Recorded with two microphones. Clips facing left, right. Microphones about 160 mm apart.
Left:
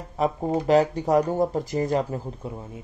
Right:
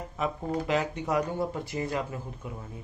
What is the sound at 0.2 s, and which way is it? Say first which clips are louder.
Speech: left 7 dB; 35° left (ahead or behind).